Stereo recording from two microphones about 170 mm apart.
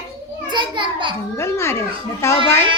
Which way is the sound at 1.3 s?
15° left (ahead or behind).